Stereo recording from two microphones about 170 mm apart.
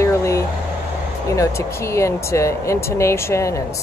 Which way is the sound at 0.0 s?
15° left (ahead or behind).